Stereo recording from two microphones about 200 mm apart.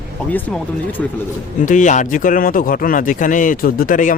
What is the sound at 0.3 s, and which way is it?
Speech, 10° left (ahead or behind).